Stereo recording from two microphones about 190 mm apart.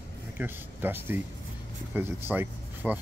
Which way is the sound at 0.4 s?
10° right (ahead or behind).